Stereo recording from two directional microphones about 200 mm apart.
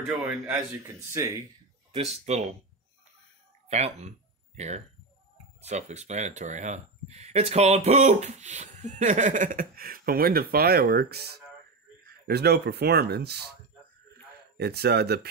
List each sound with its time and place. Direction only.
0.5 s a man's voice: 15° right (ahead or behind)
1.9 s speech: 30° right (ahead or behind)
3.6 s speech: 35° right (ahead or behind); by 11.2 s 50° right (ahead or behind)
12.3 s speech: 55° right (ahead or behind)
14.6 s speech: 55° right (ahead or behind)